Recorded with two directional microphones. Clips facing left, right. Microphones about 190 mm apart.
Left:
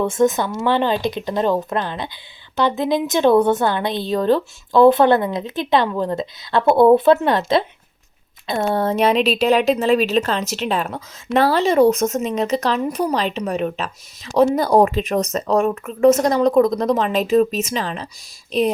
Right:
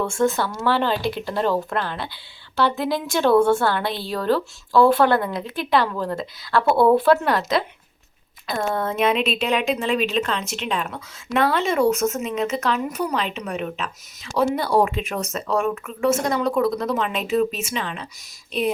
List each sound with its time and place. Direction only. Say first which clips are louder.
0.0 s a woman's voice: left 4 dB; 20° left (ahead or behind); by 18.7 s 40° left (ahead or behind)